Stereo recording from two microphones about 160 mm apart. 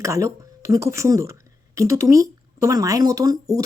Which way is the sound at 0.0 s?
20° right (ahead or behind).